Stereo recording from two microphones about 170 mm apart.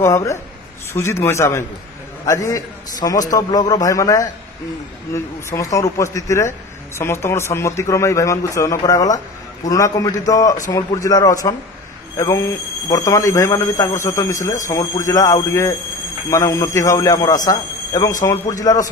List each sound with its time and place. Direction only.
0.0 s a man's voice: 15° left (ahead or behind)